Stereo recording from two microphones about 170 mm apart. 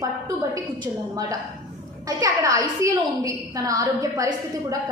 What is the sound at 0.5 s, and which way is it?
A woman's voice, 20° right (ahead or behind).